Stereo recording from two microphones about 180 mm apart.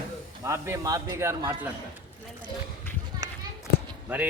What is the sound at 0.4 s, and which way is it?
Speech, 15° right (ahead or behind).